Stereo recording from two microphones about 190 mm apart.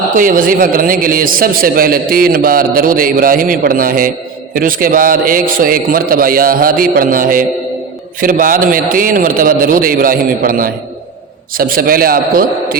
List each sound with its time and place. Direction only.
0.2 s a man's voice: 45° right (ahead or behind)